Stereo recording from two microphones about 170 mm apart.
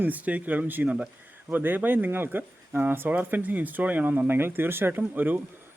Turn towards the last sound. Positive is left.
turn(degrees=-10)  # may be behind; listen again after turning